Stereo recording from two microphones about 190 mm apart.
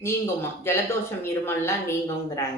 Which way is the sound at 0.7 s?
15° left (ahead or behind).